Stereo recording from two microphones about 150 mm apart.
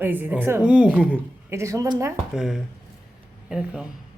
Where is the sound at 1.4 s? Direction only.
20° right (ahead or behind).